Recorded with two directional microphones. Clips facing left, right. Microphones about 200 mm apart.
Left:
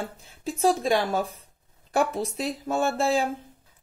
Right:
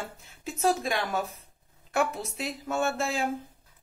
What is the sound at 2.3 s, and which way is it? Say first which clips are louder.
Speech: left 2 dB; 35° left (ahead or behind).